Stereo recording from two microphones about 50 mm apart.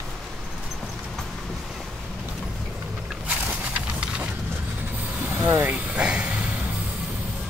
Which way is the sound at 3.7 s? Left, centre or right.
Right.